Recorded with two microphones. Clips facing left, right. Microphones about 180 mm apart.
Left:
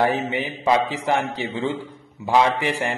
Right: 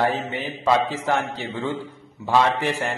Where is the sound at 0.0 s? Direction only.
15° left (ahead or behind).